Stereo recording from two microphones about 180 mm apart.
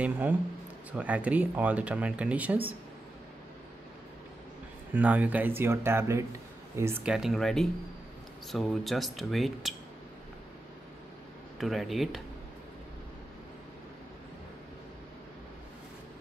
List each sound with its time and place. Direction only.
0.0 s speech: 10° right (ahead or behind)
4.9 s speech: 10° right (ahead or behind)
11.6 s speech: centre (ahead or behind)